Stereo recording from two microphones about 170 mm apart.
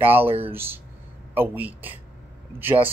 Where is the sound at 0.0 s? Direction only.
10° right (ahead or behind).